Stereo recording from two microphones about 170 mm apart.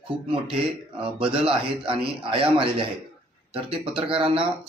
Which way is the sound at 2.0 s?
30° right (ahead or behind).